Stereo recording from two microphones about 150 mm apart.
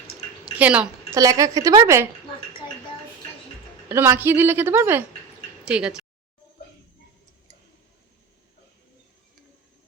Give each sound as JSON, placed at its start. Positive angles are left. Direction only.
{"t": 0.5, "sound": "a woman's voice", "side_deg": -10}
{"t": 1.1, "sound": "a woman's voice", "side_deg": -25}
{"t": 3.8, "sound": "a woman's voice", "side_deg": -15}